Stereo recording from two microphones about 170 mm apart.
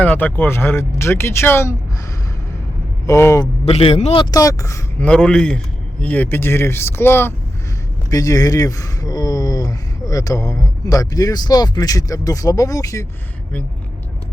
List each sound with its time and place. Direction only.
0.0 s speech: 10° left (ahead or behind)
3.1 s speech: 15° left (ahead or behind)
3.7 s speech: 35° left (ahead or behind)
4.2 s speech: 20° left (ahead or behind)
5.0 s speech: 5° left (ahead or behind)